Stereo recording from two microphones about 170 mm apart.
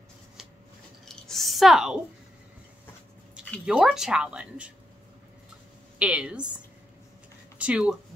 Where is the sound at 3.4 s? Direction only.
5° right (ahead or behind).